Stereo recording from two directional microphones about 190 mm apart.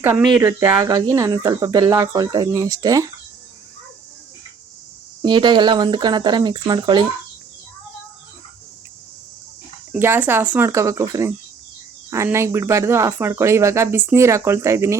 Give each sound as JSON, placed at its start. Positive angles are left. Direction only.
{"t": 0.0, "sound": "speech", "side_deg": -10}
{"t": 5.2, "sound": "speech", "side_deg": -25}
{"t": 9.9, "sound": "speech", "side_deg": -10}